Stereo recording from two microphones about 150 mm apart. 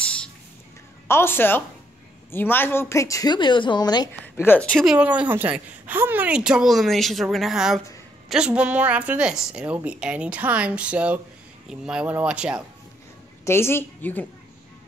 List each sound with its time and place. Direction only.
0.0 s a sound: 5° left (ahead or behind)
1.0 s a woman's voice: 15° left (ahead or behind)
4.4 s a woman's voice: 10° left (ahead or behind)
4.9 s a woman's voice: 10° right (ahead or behind)
13.5 s a woman's voice: 15° left (ahead or behind)